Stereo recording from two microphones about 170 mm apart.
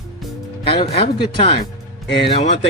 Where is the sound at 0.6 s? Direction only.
30° left (ahead or behind).